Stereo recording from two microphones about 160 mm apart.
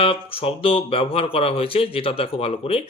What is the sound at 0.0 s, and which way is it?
Speech, 35° left (ahead or behind).